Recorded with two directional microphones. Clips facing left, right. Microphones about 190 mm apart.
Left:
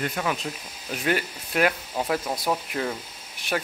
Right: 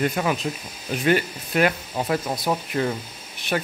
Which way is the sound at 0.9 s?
Centre (ahead or behind).